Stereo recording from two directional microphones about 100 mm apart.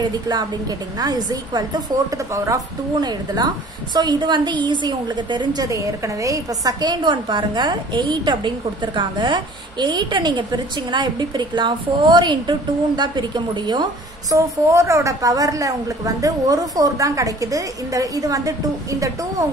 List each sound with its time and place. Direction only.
0.0 s a woman's voice: 40° right (ahead or behind)
14.3 s a woman's voice: 30° right (ahead or behind)